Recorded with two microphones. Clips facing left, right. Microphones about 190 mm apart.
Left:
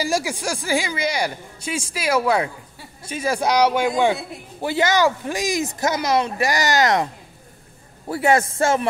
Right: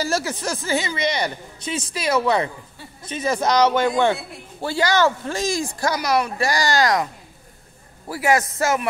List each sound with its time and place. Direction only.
0.0 s speech: 10° left (ahead or behind)
8.1 s speech: 30° left (ahead or behind)